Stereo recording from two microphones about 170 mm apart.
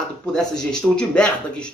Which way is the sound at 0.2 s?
5° left (ahead or behind).